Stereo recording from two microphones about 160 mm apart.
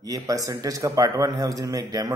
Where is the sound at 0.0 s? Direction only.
20° right (ahead or behind).